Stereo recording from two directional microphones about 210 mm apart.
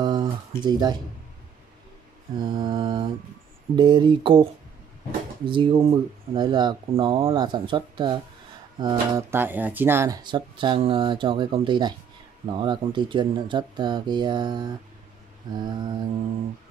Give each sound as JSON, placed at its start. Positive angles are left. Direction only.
{"t": 0.0, "sound": "a sound", "side_deg": -20}
{"t": 2.3, "sound": "speech", "side_deg": -20}
{"t": 9.1, "sound": "speech", "side_deg": -10}